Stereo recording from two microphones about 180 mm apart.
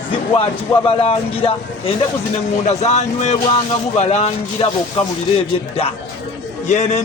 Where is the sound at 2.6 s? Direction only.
40° left (ahead or behind).